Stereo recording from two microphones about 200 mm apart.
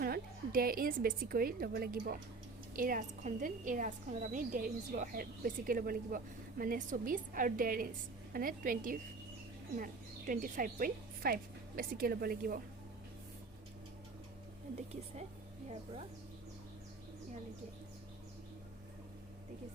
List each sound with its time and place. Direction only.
0.0 s a woman's voice: 45° right (ahead or behind)